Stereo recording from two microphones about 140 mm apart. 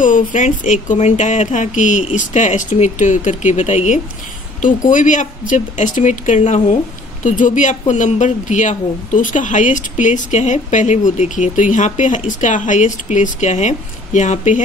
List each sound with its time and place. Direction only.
0.0 s speech: 70° left (ahead or behind)
4.6 s speech: 70° left (ahead or behind)
7.2 s speech: 65° left (ahead or behind)